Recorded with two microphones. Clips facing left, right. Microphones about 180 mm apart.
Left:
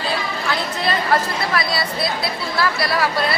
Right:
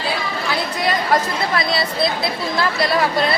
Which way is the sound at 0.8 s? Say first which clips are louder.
Right 1 dB; 15° right (ahead or behind).